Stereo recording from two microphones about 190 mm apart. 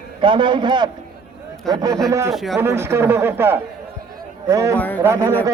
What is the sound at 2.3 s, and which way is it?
Speech, centre (ahead or behind).